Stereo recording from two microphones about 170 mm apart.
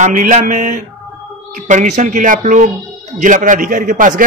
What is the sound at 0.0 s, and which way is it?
A man's voice, 50° right (ahead or behind).